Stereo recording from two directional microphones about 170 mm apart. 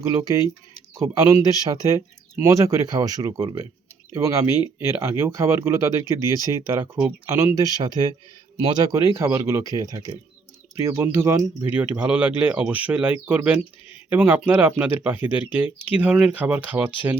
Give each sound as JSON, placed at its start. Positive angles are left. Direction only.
{"t": 0.0, "sound": "speech", "side_deg": -20}